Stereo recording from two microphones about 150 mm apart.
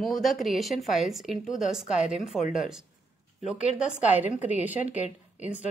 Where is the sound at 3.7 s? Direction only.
10° right (ahead or behind).